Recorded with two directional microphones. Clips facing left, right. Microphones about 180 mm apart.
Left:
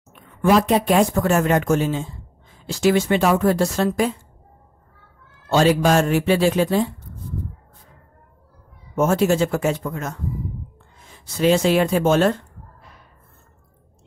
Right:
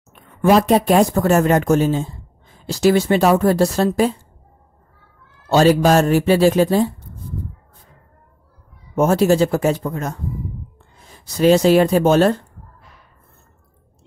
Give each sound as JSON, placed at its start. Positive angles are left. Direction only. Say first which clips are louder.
{"t": 0.4, "sound": "speech", "louder": "right 3 dB", "side_deg": -40}
{"t": 5.5, "sound": "speech", "louder": "right 3 dB", "side_deg": -40}
{"t": 8.9, "sound": "speech", "louder": "right 3 dB", "side_deg": -35}